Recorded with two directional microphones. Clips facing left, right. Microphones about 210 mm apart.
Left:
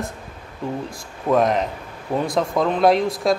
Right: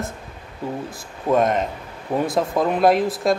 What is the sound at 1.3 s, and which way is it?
Speech, centre (ahead or behind).